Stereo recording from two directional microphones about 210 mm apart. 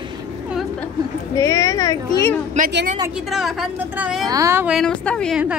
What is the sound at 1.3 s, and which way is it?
A woman's voice, 15° left (ahead or behind).